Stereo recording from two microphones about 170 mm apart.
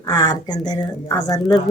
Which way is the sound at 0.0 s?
20° left (ahead or behind).